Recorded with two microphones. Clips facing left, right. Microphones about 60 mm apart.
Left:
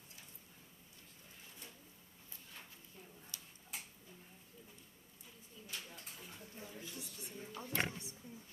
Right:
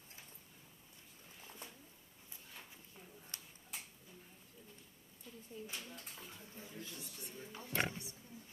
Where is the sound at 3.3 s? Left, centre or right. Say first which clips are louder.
Right 2 dB; right.